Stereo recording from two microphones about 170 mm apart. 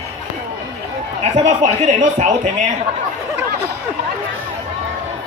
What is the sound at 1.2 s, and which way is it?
Speech, 40° right (ahead or behind).